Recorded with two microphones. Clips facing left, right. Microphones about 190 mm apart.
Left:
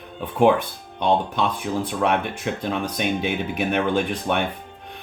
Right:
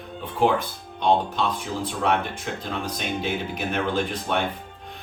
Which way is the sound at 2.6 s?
65° left (ahead or behind).